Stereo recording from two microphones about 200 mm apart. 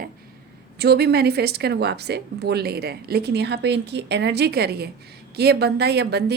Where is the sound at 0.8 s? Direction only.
55° right (ahead or behind).